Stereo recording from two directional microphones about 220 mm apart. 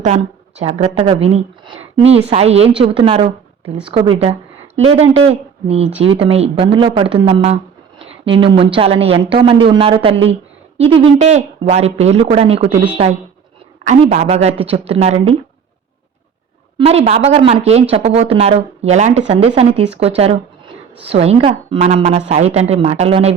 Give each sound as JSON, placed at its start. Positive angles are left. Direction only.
{"t": 0.0, "sound": "speech", "side_deg": -30}
{"t": 12.7, "sound": "speech", "side_deg": -5}
{"t": 13.8, "sound": "speech", "side_deg": -30}
{"t": 16.7, "sound": "speech", "side_deg": -25}